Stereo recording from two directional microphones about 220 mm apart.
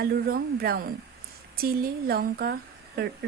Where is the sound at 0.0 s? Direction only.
40° right (ahead or behind).